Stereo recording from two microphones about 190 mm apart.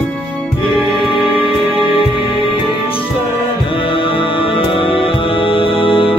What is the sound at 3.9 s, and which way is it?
Music, 25° left (ahead or behind).